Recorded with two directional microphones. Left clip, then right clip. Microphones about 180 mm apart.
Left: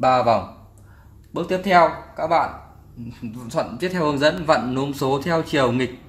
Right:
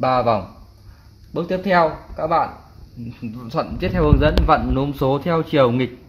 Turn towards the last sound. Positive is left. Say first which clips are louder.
# right 3 dB
turn(degrees=-50)  # may be behind; listen again after turning